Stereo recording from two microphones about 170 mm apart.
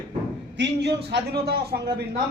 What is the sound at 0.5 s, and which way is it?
A man's voice, 80° right.